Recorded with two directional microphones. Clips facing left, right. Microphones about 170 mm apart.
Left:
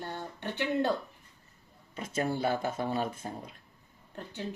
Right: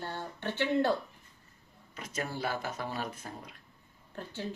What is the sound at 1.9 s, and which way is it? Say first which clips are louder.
Speech: left 5 dB; 30° left (ahead or behind).